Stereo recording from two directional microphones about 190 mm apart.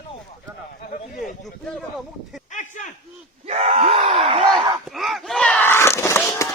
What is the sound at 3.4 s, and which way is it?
Gasp, 35° right (ahead or behind).